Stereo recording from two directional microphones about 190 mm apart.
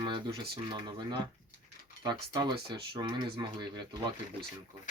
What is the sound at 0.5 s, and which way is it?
Speech, 25° right (ahead or behind).